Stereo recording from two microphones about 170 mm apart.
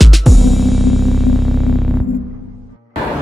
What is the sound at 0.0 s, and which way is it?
Music, centre (ahead or behind).